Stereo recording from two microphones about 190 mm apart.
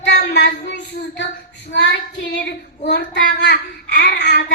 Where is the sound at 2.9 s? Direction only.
65° left (ahead or behind).